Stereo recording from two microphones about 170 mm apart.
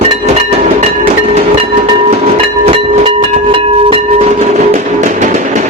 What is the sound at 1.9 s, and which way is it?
Train, 35° right (ahead or behind).